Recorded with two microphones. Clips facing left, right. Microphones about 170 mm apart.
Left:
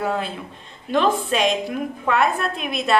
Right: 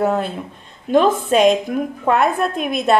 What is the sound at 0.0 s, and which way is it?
A woman's voice, 45° right (ahead or behind).